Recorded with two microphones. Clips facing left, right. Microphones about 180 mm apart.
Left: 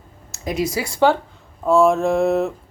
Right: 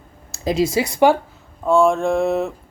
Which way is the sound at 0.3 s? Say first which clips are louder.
Right 4 dB; 30° right (ahead or behind).